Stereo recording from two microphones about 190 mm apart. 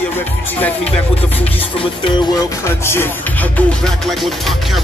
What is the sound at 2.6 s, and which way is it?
Music, 15° left (ahead or behind).